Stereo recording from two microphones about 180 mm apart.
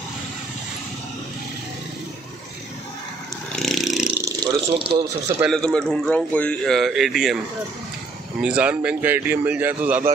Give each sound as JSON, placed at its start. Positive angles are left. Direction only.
{"t": 3.5, "sound": "a sound", "side_deg": 0}
{"t": 4.4, "sound": "speech", "side_deg": -25}
{"t": 5.5, "sound": "speech", "side_deg": 5}
{"t": 8.4, "sound": "a man's voice", "side_deg": -5}